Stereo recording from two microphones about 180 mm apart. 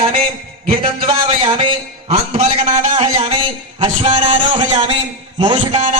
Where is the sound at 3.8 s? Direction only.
30° right (ahead or behind).